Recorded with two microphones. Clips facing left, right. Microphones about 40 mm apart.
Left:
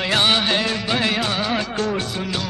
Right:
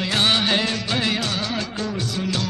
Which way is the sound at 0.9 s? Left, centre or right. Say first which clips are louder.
Left 2 dB; centre.